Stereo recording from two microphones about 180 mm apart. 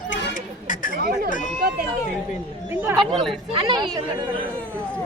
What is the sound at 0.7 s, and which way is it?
Speech, 50° left (ahead or behind).